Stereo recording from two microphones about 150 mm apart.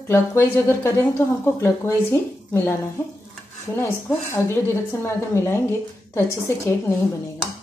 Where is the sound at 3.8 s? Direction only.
15° left (ahead or behind).